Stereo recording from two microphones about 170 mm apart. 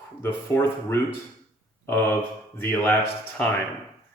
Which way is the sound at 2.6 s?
10° left (ahead or behind).